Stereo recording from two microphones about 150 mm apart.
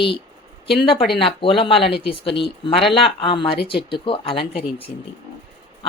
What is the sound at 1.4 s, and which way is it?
Speech, 35° left (ahead or behind).